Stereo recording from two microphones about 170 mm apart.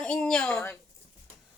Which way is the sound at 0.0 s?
5° left (ahead or behind).